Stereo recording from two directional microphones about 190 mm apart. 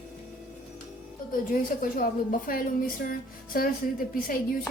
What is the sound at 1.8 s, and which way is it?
A woman's voice, 45° left (ahead or behind).